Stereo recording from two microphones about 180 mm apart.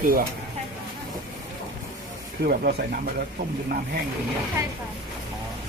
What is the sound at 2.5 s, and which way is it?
Speech, 55° right (ahead or behind).